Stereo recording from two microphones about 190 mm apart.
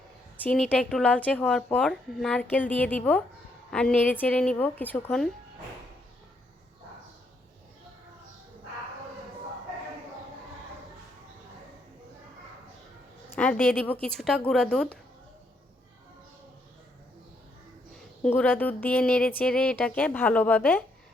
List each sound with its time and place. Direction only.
0.3 s speech: 5° left (ahead or behind)
13.3 s a woman's voice: 10° left (ahead or behind)
18.2 s speech: 10° left (ahead or behind)